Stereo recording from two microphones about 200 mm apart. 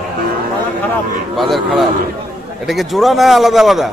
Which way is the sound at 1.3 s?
Centre (ahead or behind).